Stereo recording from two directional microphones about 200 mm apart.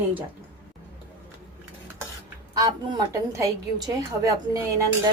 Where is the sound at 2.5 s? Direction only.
20° right (ahead or behind).